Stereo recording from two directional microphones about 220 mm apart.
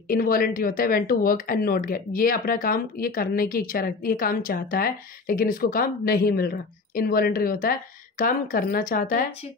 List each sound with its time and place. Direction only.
0.1 s speech: 40° left (ahead or behind)